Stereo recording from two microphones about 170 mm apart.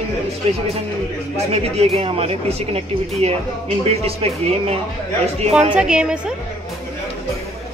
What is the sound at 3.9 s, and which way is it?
Speech, 35° right (ahead or behind).